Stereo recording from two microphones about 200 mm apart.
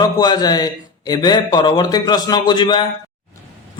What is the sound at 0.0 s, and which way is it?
A man's voice, 20° left (ahead or behind).